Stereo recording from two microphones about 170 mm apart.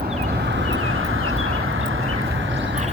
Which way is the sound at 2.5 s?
90° right.